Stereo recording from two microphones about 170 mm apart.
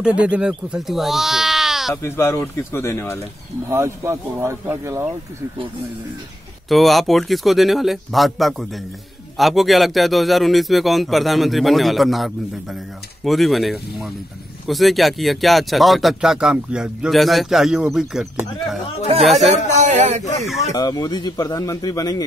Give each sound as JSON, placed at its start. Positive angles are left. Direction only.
{"t": 0.3, "sound": "speech", "side_deg": -5}
{"t": 2.0, "sound": "speech", "side_deg": 15}
{"t": 3.6, "sound": "speech", "side_deg": -15}
{"t": 6.7, "sound": "a man's voice", "side_deg": 0}
{"t": 19.5, "sound": "speech", "side_deg": -45}
{"t": 20.7, "sound": "speech", "side_deg": 25}